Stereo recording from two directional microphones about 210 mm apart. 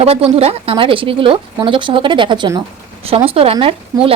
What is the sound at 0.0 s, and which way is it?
Speech, 30° right (ahead or behind).